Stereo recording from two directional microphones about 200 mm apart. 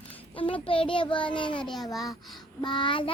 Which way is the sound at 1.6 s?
Centre (ahead or behind).